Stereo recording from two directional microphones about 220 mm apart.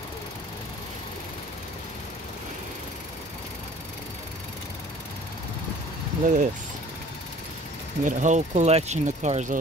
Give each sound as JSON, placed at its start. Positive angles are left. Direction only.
{"t": 6.2, "sound": "speech", "side_deg": -35}
{"t": 8.0, "sound": "speech", "side_deg": -35}